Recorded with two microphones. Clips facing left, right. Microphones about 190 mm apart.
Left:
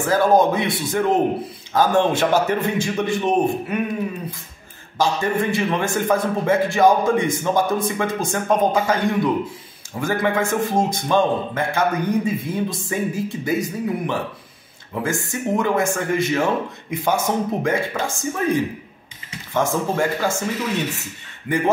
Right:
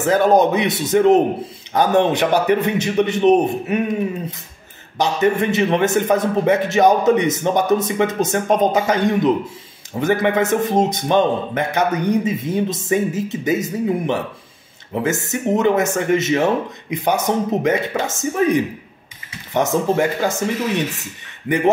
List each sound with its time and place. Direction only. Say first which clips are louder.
0.0 s a man's voice: right 2 dB; 20° right (ahead or behind)
4.9 s a man's voice: right 3 dB; 20° right (ahead or behind)